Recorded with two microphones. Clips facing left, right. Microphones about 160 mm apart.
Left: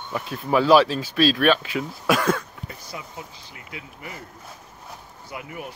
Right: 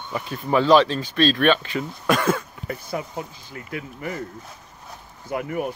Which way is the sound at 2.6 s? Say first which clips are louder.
Right 8 dB; 55° right (ahead or behind).